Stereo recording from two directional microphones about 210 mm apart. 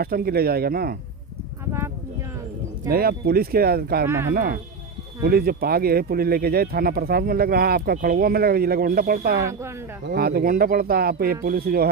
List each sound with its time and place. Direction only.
0.0 s speech: 45° right (ahead or behind)
2.9 s speech: 45° right (ahead or behind)
9.4 s speech: 15° right (ahead or behind)
10.1 s speech: 45° right (ahead or behind)